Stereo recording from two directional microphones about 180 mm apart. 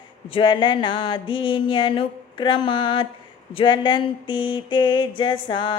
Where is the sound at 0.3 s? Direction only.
30° left (ahead or behind).